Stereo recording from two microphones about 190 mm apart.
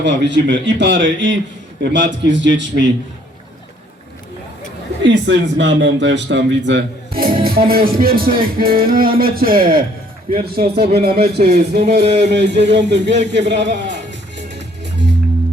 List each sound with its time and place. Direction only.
0.0 s speech: 70° right (ahead or behind)
5.0 s a man's voice: 70° right (ahead or behind)